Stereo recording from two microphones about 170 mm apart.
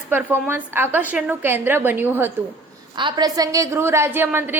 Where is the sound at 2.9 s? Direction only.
25° right (ahead or behind).